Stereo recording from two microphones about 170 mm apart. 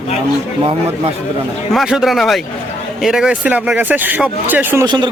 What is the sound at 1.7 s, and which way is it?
Speech, 5° right (ahead or behind).